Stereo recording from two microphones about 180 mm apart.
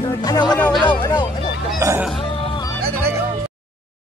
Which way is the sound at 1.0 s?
25° left (ahead or behind).